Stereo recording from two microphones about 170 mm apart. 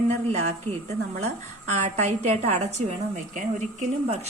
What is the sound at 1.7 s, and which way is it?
A woman's voice, 45° right (ahead or behind).